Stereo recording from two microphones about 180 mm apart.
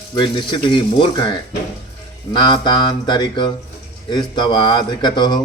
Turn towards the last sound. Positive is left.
turn(degrees=25)  # may be behind; listen again after turning